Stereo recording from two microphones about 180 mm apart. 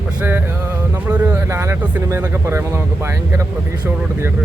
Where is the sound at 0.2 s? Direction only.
10° right (ahead or behind).